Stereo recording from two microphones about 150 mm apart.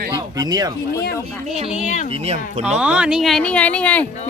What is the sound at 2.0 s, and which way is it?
Speech, 40° right (ahead or behind).